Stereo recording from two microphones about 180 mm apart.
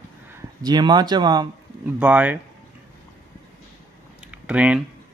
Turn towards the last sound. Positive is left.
turn(degrees=-5)  # may be behind; listen again after turning